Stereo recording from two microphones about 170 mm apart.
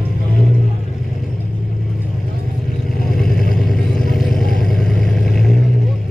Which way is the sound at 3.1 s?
Centre (ahead or behind).